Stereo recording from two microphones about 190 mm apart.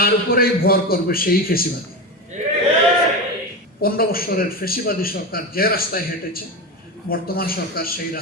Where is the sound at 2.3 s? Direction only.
40° right (ahead or behind).